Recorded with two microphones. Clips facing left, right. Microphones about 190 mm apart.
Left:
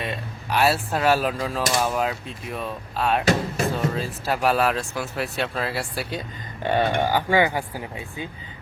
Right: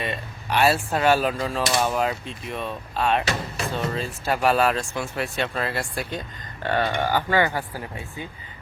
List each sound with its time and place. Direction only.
0.0 s speech: centre (ahead or behind); by 8.3 s 15° left (ahead or behind)